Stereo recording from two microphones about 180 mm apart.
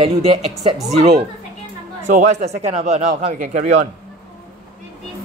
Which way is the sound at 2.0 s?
40° right (ahead or behind).